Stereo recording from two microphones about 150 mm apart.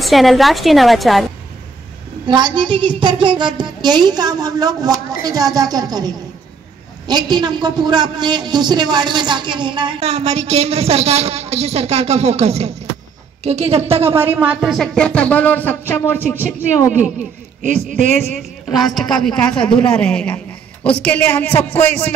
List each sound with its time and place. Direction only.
0.0 s a woman's voice: centre (ahead or behind)
2.2 s a woman's voice: 30° right (ahead or behind)
9.9 s a woman's voice: 45° right (ahead or behind)
14.3 s speech: 10° right (ahead or behind); by 16.2 s 10° left (ahead or behind)
16.2 s speech: 15° right (ahead or behind)
18.4 s a woman's voice: centre (ahead or behind)